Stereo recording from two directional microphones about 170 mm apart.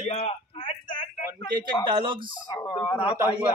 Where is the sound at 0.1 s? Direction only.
35° left (ahead or behind).